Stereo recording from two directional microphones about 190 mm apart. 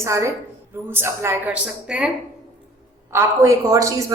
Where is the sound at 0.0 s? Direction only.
15° right (ahead or behind).